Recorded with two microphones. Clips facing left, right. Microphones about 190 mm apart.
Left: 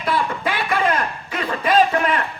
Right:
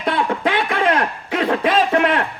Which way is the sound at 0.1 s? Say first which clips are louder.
Right 3 dB; 65° right (ahead or behind).